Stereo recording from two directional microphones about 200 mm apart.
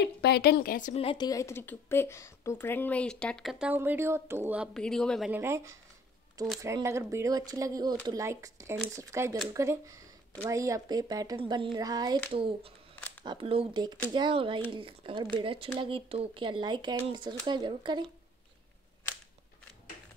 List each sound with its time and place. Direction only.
0.0 s a woman's voice: 55° left (ahead or behind); by 4.6 s 10° right (ahead or behind)
4.7 s speech: 5° left (ahead or behind)
5.3 s speech: 15° right (ahead or behind)